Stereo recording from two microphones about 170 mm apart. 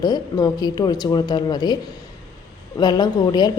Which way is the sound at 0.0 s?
25° left (ahead or behind).